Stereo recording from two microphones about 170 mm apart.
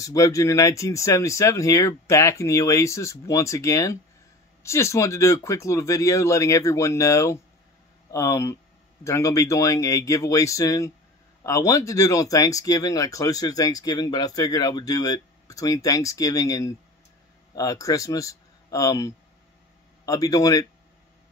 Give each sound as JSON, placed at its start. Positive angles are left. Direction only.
{"t": 0.0, "sound": "speech", "side_deg": 20}